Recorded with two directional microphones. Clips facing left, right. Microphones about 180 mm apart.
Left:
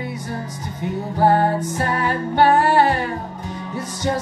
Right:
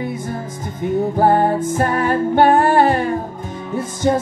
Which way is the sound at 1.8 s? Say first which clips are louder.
Right 5 dB; 50° right (ahead or behind).